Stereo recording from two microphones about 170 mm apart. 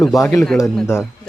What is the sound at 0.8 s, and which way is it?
Speech, 15° left (ahead or behind).